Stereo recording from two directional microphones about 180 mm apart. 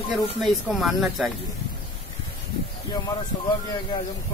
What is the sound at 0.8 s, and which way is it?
Speech, centre (ahead or behind).